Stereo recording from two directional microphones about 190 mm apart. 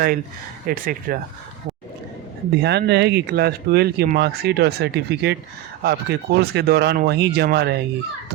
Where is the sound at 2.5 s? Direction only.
60° right (ahead or behind).